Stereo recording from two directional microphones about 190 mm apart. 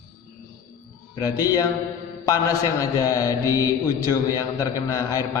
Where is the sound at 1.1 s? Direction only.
20° left (ahead or behind).